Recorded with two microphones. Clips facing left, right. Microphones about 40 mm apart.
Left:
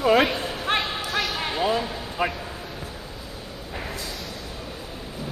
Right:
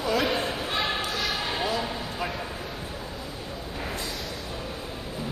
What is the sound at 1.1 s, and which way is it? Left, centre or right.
Basketball bounce, centre.